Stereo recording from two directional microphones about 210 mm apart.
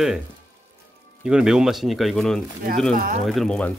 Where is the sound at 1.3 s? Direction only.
5° right (ahead or behind).